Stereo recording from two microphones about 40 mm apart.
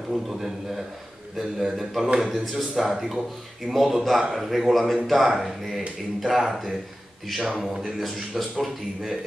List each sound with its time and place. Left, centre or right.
0.1 s a man's voice: centre
3.7 s speech: right
4.2 s a man's voice: centre